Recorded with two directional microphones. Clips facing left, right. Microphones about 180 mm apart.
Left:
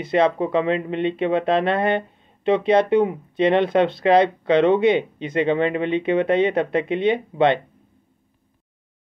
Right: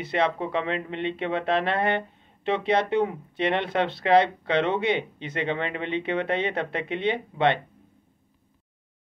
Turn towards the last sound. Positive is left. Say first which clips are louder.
# left 5 dB
turn(degrees=20)  # may be behind; listen again after turning